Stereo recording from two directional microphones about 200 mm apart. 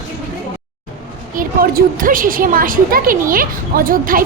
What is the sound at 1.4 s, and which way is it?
A woman's voice, 45° right (ahead or behind).